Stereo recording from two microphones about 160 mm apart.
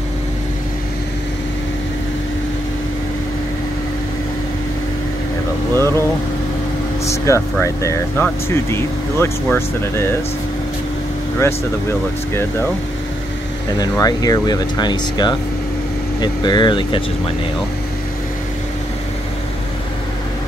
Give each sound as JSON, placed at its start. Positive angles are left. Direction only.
{"t": 5.8, "sound": "speech", "side_deg": 15}
{"t": 7.1, "sound": "speech", "side_deg": 20}
{"t": 13.7, "sound": "speech", "side_deg": 25}